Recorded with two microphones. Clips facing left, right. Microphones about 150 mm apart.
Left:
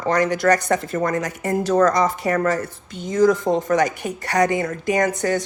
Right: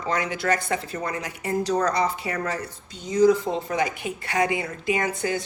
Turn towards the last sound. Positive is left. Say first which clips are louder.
# left 5 dB
turn(degrees=45)  # may be behind; listen again after turning